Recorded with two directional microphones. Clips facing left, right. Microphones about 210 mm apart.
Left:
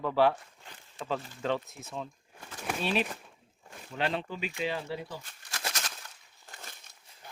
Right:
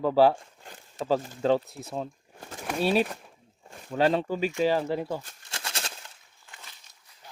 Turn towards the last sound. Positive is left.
turn(degrees=40)  # may be behind; listen again after turning